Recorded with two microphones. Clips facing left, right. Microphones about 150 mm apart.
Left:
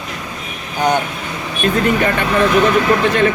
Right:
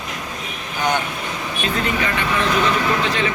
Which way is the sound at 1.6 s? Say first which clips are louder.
Left 8 dB; 50° left (ahead or behind).